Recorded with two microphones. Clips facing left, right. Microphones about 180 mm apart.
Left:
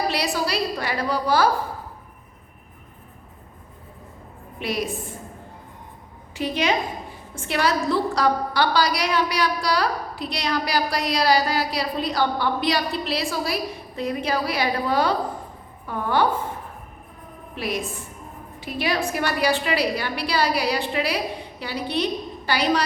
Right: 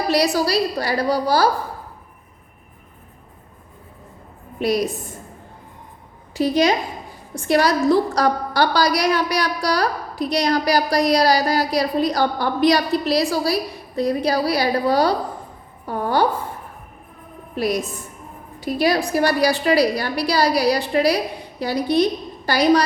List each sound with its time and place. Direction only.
0.1 s a woman's voice: 40° right (ahead or behind)
4.6 s a woman's voice: 40° right (ahead or behind)
6.3 s a woman's voice: 40° right (ahead or behind)
17.5 s a woman's voice: 40° right (ahead or behind)